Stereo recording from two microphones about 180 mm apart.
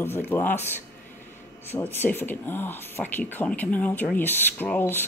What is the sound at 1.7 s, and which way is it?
Speech, 10° left (ahead or behind).